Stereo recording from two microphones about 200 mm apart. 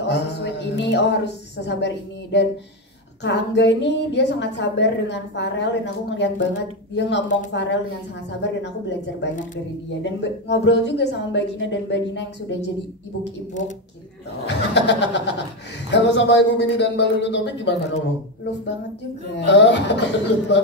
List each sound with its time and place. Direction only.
0.0 s speech: 60° left (ahead or behind)
3.3 s a woman's voice: 60° left (ahead or behind)
14.4 s a woman's voice: 60° left (ahead or behind)
19.4 s a woman's voice: 60° left (ahead or behind)